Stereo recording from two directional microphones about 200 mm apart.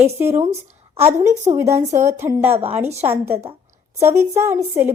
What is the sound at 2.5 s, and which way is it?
Speech, 30° right (ahead or behind).